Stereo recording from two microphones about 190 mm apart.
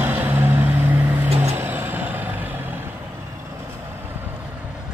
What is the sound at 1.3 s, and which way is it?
Music, 35° right (ahead or behind).